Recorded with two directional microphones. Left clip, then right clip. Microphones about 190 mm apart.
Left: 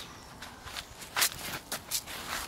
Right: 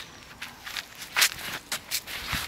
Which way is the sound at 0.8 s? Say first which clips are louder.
Right 6 dB; 15° right (ahead or behind).